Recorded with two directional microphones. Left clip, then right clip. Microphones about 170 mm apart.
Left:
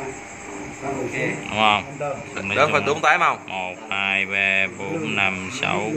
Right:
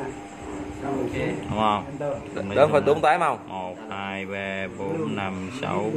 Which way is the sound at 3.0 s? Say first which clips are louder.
Left 3 dB; 20° right (ahead or behind).